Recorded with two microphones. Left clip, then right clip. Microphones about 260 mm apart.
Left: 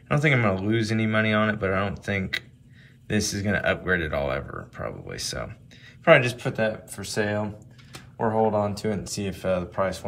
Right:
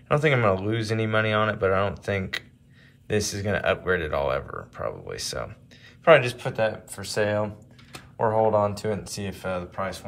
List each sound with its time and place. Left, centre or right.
0.1 s speech: centre